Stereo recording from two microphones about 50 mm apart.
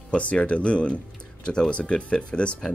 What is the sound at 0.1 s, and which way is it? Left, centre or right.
Speech, left.